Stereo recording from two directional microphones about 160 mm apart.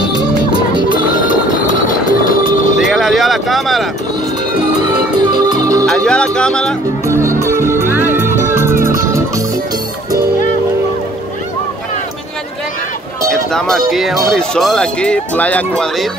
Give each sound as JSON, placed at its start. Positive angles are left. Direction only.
{"t": 1.2, "sound": "a sound", "side_deg": 60}
{"t": 2.8, "sound": "a sound", "side_deg": 0}
{"t": 4.7, "sound": "music", "side_deg": -25}
{"t": 5.9, "sound": "speech", "side_deg": 5}
{"t": 7.1, "sound": "music", "side_deg": -15}
{"t": 13.3, "sound": "speech", "side_deg": 5}